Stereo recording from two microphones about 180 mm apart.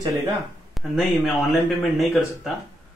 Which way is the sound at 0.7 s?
Centre (ahead or behind).